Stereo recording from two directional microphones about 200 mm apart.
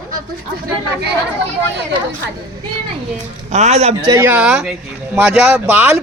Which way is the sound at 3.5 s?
35° right (ahead or behind).